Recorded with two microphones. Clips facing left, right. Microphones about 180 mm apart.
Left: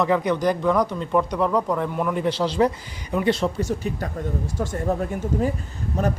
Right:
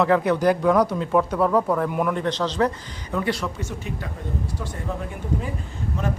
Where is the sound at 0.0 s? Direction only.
5° right (ahead or behind).